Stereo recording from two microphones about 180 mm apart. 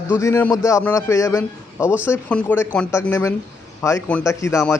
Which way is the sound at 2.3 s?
10° left (ahead or behind).